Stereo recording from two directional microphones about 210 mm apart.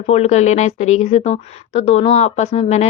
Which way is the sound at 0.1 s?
30° left (ahead or behind).